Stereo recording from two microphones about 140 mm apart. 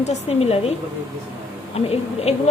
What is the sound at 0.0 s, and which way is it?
Speech, 50° left (ahead or behind).